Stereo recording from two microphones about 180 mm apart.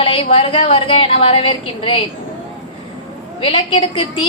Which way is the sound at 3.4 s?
30° left (ahead or behind).